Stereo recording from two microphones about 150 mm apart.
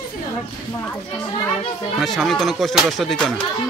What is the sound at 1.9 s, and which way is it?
Speech, centre (ahead or behind).